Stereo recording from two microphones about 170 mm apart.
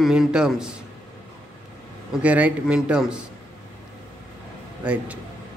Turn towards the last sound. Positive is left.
turn(degrees=-10)  # may be behind; listen again after turning